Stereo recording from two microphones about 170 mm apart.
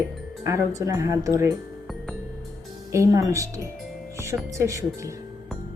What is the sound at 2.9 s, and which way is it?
Speech, 20° right (ahead or behind).